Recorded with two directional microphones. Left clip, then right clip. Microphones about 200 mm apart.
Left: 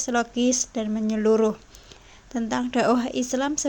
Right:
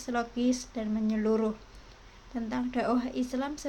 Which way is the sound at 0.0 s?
40° left (ahead or behind).